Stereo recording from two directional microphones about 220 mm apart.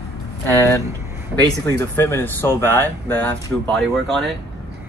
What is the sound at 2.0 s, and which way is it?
Speech, 10° left (ahead or behind).